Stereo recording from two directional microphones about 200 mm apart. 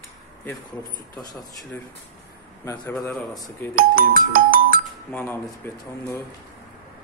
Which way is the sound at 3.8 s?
45° right (ahead or behind).